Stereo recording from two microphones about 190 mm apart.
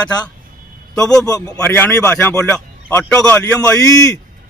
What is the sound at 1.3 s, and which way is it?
A man's voice, 20° left (ahead or behind).